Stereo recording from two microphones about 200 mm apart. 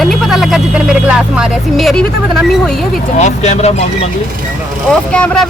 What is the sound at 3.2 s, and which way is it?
Speech, 35° left (ahead or behind).